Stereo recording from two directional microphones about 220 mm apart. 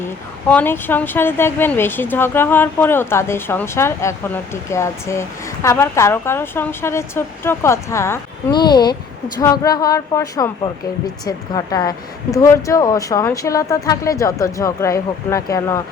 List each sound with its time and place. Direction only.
0.0 s a woman's voice: 10° left (ahead or behind)